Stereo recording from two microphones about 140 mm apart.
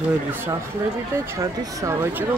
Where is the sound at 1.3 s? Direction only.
25° right (ahead or behind).